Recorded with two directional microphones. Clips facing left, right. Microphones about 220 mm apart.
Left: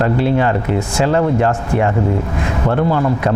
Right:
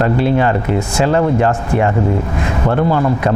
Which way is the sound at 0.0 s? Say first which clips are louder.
Right 1 dB; 25° right (ahead or behind).